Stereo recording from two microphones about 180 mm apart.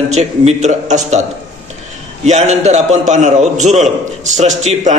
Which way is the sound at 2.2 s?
40° right (ahead or behind).